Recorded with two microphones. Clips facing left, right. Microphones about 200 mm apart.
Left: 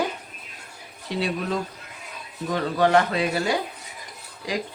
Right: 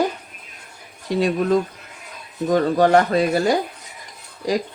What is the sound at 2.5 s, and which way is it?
Speech, 45° right (ahead or behind).